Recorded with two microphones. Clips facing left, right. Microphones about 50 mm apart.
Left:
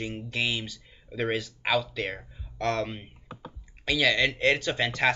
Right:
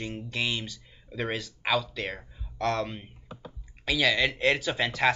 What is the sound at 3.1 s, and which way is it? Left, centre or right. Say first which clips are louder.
Computer keyboard: left 1 dB; centre.